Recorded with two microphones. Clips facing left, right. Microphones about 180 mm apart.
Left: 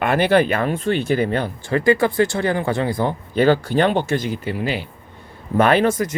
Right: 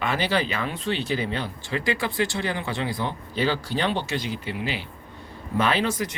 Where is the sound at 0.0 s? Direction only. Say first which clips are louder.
Left 9 dB; 55° left (ahead or behind).